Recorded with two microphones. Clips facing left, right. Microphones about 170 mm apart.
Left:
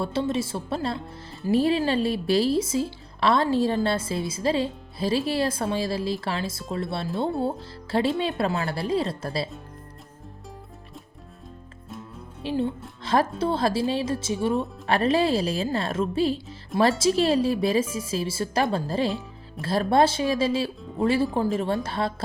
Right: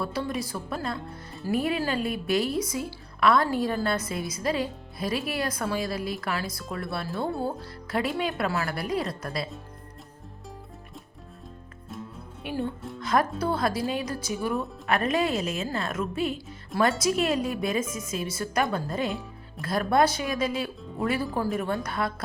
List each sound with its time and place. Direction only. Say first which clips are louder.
0.0 s a woman's voice: left 4 dB; 25° left (ahead or behind)
12.4 s a woman's voice: left 4 dB; 25° left (ahead or behind)